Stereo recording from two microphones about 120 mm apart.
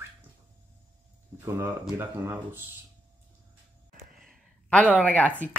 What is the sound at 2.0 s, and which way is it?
Speech, 20° right (ahead or behind).